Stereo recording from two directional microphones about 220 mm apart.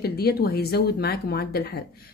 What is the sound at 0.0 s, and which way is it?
A woman's voice, 45° left (ahead or behind).